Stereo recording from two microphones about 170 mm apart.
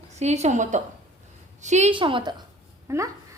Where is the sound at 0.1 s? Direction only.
40° right (ahead or behind).